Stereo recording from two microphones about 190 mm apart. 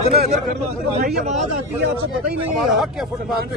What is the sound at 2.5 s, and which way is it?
Speech, centre (ahead or behind).